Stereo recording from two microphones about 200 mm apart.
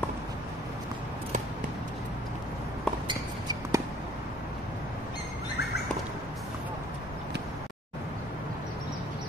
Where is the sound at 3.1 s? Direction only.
20° right (ahead or behind).